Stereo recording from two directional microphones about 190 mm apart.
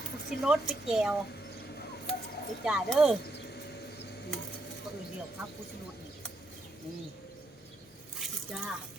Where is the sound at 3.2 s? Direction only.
60° left (ahead or behind).